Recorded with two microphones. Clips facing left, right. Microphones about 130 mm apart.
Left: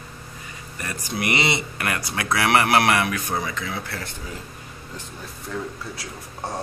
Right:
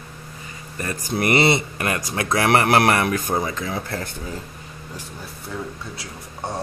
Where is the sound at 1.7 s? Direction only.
30° right (ahead or behind).